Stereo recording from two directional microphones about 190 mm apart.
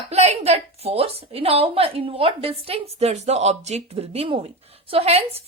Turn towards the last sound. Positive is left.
turn(degrees=-30)  # may be behind; listen again after turning